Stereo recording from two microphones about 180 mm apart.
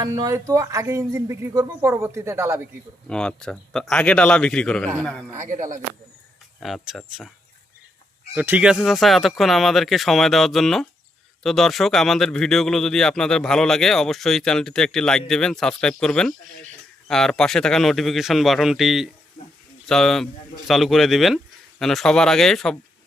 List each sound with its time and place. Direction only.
0.0 s speech: 20° right (ahead or behind)
3.1 s speech: 5° left (ahead or behind)
5.4 s speech: 45° right (ahead or behind)
6.6 s speech: centre (ahead or behind)
8.4 s speech: 10° right (ahead or behind)